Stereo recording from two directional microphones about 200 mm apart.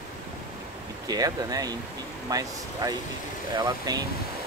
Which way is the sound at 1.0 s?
20° right (ahead or behind).